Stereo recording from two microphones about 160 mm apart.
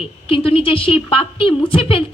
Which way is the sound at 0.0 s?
35° left (ahead or behind).